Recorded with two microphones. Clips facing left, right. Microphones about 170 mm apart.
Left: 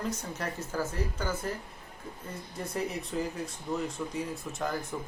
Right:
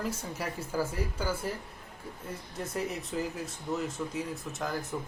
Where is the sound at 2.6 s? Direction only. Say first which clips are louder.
Left 1 dB; centre (ahead or behind).